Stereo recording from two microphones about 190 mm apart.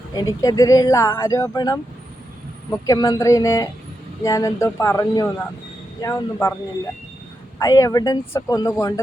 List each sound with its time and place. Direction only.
0.2 s speech: 20° left (ahead or behind)
2.8 s speech: 20° left (ahead or behind)
7.6 s speech: 15° left (ahead or behind)